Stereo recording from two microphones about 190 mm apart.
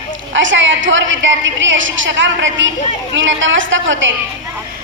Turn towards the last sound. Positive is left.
turn(degrees=-80)